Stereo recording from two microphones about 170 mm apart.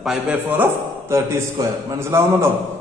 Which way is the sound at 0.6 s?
15° right (ahead or behind).